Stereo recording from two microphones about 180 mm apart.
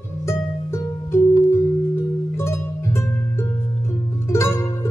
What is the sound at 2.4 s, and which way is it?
Music, 15° left (ahead or behind).